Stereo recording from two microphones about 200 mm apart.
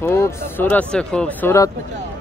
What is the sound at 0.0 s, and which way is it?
Speech, 10° left (ahead or behind).